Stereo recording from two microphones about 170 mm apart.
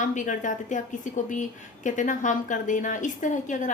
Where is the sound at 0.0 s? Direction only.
50° left (ahead or behind).